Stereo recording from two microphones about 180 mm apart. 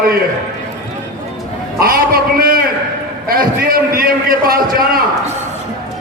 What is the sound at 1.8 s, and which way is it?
A man's voice, 55° right (ahead or behind).